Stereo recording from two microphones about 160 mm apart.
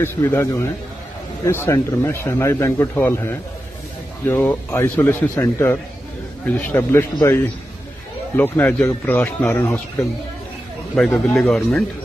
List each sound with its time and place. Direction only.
0.0 s a man's voice: 15° left (ahead or behind)
8.4 s a man's voice: 10° left (ahead or behind)
11.0 s a man's voice: 5° left (ahead or behind)